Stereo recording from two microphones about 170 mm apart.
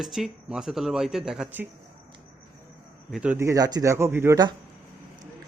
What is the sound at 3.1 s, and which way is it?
Speech, 5° right (ahead or behind).